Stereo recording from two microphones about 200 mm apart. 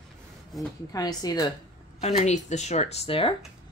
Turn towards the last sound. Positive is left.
turn(degrees=30)  # may be behind; listen again after turning